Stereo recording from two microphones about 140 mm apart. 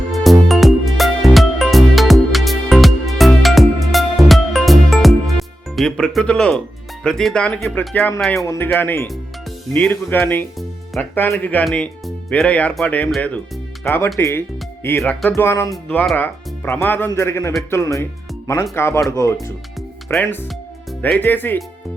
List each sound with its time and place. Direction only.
0.1 s music: centre (ahead or behind)
7.0 s speech: 5° left (ahead or behind)
13.8 s speech: 20° left (ahead or behind)